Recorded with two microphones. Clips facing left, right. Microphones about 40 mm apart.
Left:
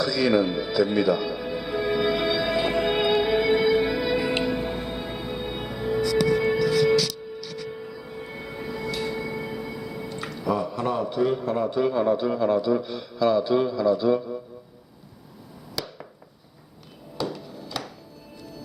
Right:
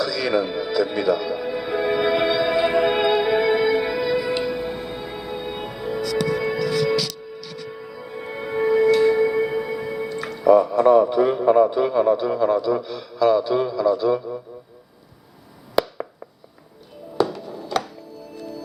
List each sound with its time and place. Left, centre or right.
0.0 s music: centre
6.6 s music: right
7.8 s music: centre
8.2 s music: right
8.5 s music: right; by 11.7 s centre
11.7 s a man's voice: centre
15.8 s a sound: right
17.2 s music: right